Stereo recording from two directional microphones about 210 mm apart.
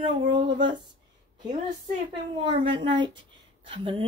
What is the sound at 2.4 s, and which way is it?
Speech, 25° right (ahead or behind).